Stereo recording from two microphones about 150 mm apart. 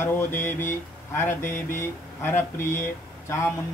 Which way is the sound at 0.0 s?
15° left (ahead or behind).